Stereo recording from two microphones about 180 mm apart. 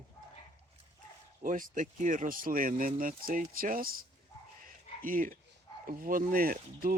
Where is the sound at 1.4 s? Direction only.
45° right (ahead or behind).